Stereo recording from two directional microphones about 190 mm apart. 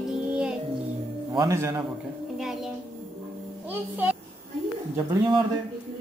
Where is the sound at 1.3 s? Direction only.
15° right (ahead or behind).